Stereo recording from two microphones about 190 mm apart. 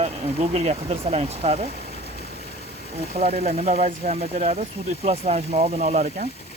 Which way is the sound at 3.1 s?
35° right (ahead or behind).